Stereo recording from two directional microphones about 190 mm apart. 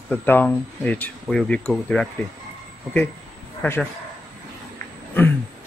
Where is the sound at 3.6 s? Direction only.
5° left (ahead or behind).